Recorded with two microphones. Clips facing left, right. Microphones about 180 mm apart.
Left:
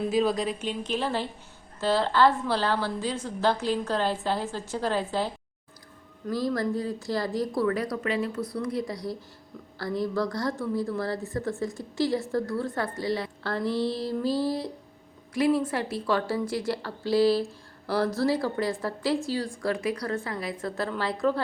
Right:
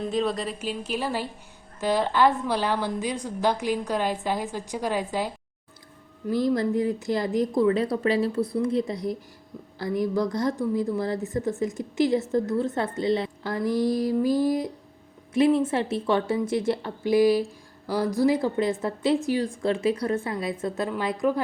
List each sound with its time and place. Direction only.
0.1 s a woman's voice: centre (ahead or behind)
6.3 s a woman's voice: 20° right (ahead or behind)